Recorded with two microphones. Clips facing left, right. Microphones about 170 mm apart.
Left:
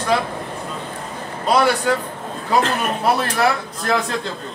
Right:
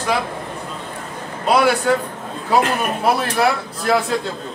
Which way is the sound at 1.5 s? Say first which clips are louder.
Right 1 dB; 10° right (ahead or behind).